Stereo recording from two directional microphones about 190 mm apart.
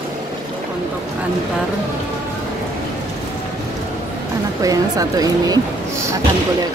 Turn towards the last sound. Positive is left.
turn(degrees=-20)  # may be behind; listen again after turning